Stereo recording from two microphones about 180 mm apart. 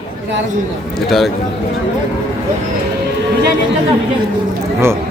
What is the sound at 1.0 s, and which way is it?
Speech, centre (ahead or behind).